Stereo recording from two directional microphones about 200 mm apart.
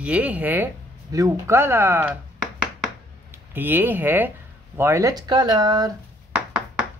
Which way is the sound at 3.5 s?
10° right (ahead or behind).